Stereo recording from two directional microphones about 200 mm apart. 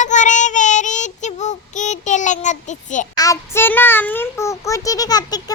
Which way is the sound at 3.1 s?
15° left (ahead or behind).